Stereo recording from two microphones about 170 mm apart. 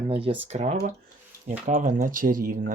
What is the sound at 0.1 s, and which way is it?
Speech, 30° right (ahead or behind).